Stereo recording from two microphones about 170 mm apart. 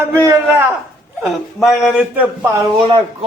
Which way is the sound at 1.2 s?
Centre (ahead or behind).